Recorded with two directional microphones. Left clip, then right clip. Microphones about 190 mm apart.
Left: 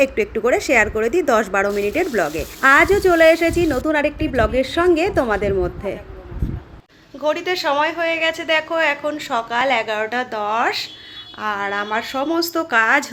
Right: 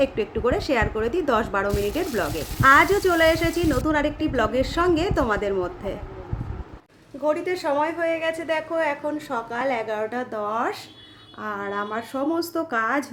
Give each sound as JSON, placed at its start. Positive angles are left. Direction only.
{"t": 0.0, "sound": "a woman's voice", "side_deg": 20}
{"t": 7.3, "sound": "a woman's voice", "side_deg": -5}